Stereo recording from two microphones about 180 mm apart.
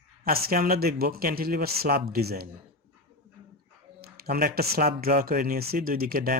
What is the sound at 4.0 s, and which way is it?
Speech, 55° right (ahead or behind).